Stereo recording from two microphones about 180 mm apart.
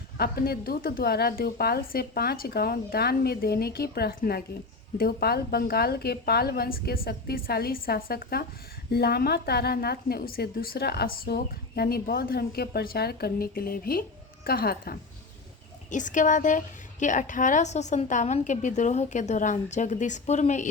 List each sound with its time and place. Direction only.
0.2 s a woman's voice: 55° left (ahead or behind)
15.9 s a woman's voice: 45° left (ahead or behind)